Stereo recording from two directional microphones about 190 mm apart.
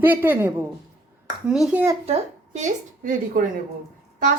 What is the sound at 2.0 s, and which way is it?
A woman's voice, 35° right (ahead or behind).